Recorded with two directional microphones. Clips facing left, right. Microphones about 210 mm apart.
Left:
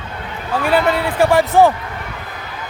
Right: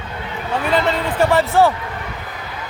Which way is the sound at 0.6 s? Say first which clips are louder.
Left 3 dB; 10° left (ahead or behind).